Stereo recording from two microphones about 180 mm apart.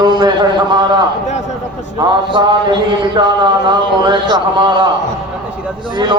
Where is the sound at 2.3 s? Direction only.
25° right (ahead or behind).